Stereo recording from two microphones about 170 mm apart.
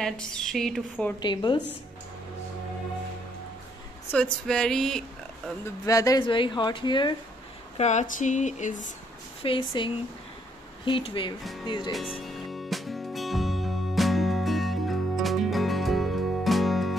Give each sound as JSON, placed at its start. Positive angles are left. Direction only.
{"t": 0.0, "sound": "a woman's voice", "side_deg": 5}
{"t": 1.2, "sound": "a woman's voice", "side_deg": 25}
{"t": 4.1, "sound": "a woman's voice", "side_deg": 5}
{"t": 5.9, "sound": "a woman's voice", "side_deg": 20}
{"t": 7.7, "sound": "speech", "side_deg": 40}
{"t": 9.4, "sound": "a woman's voice", "side_deg": 30}
{"t": 10.9, "sound": "a woman's voice", "side_deg": 30}
{"t": 12.2, "sound": "music", "side_deg": 0}